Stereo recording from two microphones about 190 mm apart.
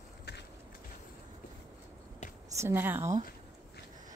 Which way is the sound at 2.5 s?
15° right (ahead or behind).